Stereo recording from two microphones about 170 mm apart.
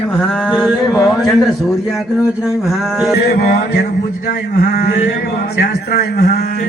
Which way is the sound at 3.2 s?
70° left (ahead or behind).